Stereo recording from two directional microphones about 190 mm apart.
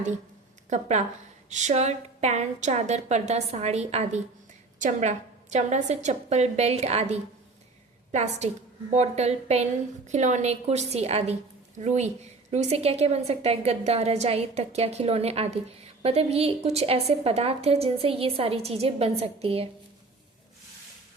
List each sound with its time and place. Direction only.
0.7 s a woman's voice: 35° right (ahead or behind)